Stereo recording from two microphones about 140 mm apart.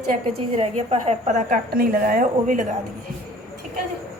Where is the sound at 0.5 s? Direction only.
50° right (ahead or behind); by 2.7 s 65° right (ahead or behind).